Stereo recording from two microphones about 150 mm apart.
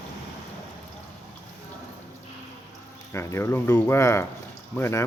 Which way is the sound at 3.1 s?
20° left (ahead or behind).